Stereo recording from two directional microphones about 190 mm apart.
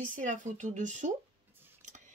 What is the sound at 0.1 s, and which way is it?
Speech, 40° right (ahead or behind).